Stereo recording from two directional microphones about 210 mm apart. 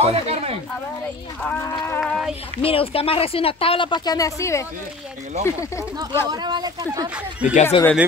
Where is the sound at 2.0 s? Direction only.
Centre (ahead or behind).